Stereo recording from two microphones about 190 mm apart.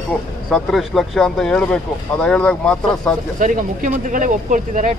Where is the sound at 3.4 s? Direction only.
45° right (ahead or behind).